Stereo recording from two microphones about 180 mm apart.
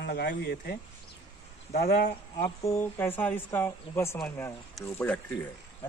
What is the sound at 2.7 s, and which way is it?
A man's voice, 10° left (ahead or behind).